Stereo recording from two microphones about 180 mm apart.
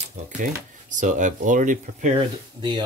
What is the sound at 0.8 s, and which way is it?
Speech, 45° right (ahead or behind).